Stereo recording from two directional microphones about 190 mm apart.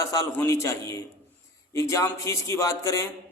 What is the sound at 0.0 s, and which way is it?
A man's voice, 15° left (ahead or behind).